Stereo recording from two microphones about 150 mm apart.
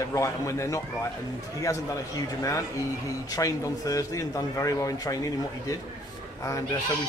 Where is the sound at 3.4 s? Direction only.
20° left (ahead or behind).